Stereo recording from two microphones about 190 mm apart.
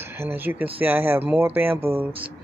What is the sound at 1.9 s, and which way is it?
Speech, 30° right (ahead or behind).